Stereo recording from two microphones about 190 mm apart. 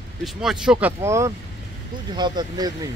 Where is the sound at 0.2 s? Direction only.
Centre (ahead or behind).